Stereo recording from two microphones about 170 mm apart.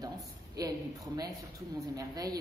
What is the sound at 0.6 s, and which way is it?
Speech, 20° right (ahead or behind).